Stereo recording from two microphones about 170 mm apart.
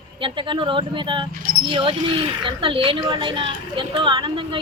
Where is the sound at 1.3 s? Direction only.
55° right (ahead or behind).